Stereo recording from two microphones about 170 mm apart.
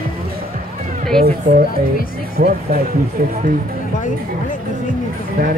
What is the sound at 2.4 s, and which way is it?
Speech, 45° right (ahead or behind).